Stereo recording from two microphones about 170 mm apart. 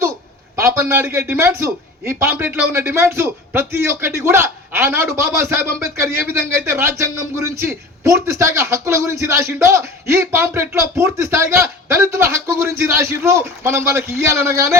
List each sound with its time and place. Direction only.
0.5 s a man's voice: 15° right (ahead or behind)